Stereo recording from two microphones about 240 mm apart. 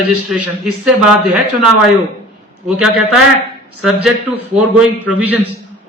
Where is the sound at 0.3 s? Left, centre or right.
Centre.